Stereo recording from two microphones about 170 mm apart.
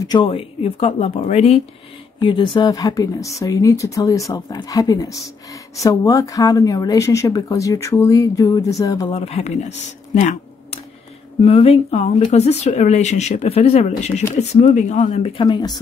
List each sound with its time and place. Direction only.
0.1 s speech: 30° left (ahead or behind)
2.2 s speech: 30° left (ahead or behind)
9.1 s speech: 35° left (ahead or behind)
15.4 s speech: 25° left (ahead or behind)